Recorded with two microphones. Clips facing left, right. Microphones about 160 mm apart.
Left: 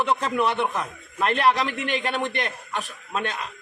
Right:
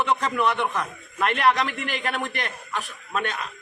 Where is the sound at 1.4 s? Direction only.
Centre (ahead or behind).